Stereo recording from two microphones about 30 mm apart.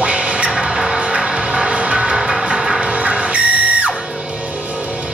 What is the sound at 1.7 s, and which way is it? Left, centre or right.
Music, right.